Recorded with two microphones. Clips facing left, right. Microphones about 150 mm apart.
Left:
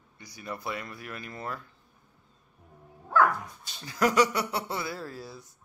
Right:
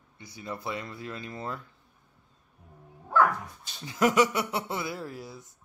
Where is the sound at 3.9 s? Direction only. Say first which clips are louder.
Right 1 dB; 20° right (ahead or behind).